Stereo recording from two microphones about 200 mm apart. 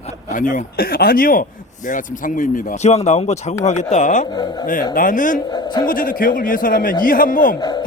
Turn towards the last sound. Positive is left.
turn(degrees=20)  # may be behind; listen again after turning